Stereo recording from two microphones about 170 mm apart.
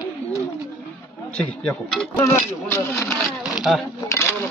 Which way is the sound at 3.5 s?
5° right (ahead or behind).